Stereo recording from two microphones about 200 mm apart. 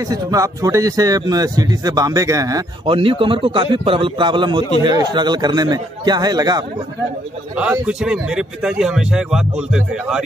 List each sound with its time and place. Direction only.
0.1 s speech: 15° right (ahead or behind)
7.8 s speech: 5° right (ahead or behind)